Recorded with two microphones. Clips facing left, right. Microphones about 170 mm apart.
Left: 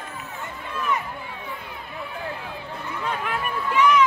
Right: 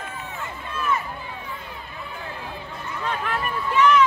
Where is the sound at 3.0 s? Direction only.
10° left (ahead or behind).